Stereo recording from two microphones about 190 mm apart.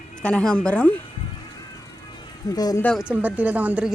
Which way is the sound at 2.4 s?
20° left (ahead or behind).